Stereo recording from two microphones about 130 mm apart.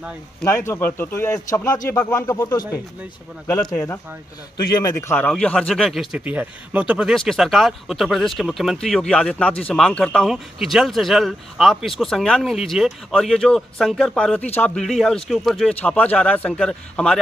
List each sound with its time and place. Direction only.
0.6 s a man's voice: 15° left (ahead or behind)
2.3 s speech: 30° left (ahead or behind)
5.1 s speech: 10° left (ahead or behind)
6.1 s speech: 10° right (ahead or behind); by 14.9 s 15° left (ahead or behind)
14.9 s speech: centre (ahead or behind)
15.7 s a man's voice: 10° left (ahead or behind)